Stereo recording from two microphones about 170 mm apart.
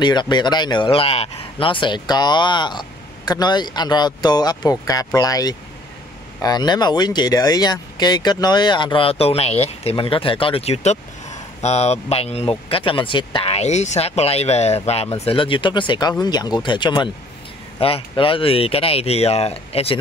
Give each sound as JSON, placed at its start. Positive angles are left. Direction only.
{"t": 0.0, "sound": "speech", "side_deg": 25}